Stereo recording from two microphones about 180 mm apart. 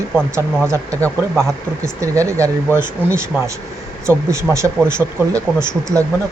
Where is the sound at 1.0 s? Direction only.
Centre (ahead or behind).